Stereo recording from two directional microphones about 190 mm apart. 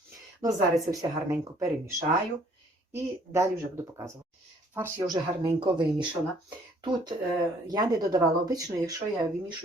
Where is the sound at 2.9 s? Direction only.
15° right (ahead or behind).